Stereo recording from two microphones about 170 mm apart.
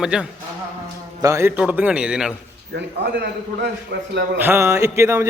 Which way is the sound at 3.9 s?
80° right.